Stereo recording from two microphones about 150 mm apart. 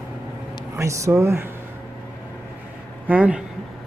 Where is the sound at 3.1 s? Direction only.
10° right (ahead or behind).